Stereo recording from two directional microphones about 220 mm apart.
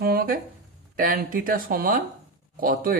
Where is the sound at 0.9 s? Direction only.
40° right (ahead or behind).